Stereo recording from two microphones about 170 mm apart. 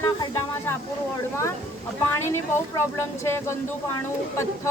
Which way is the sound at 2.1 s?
15° left (ahead or behind).